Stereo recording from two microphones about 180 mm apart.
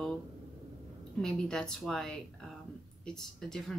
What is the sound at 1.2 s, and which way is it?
Speech, 5° left (ahead or behind).